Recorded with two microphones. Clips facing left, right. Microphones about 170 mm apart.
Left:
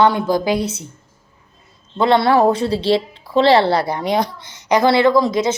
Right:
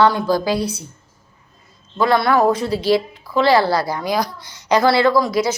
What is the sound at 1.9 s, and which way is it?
Speech, 25° left (ahead or behind).